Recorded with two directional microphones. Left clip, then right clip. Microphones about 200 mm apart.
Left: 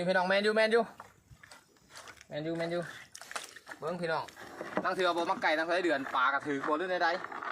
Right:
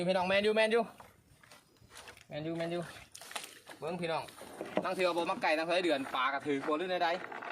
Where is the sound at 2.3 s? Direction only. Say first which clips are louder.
Left 2 dB; 20° right (ahead or behind).